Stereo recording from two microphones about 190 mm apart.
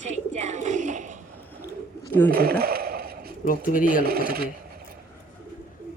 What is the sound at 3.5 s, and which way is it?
Speech, 45° left (ahead or behind).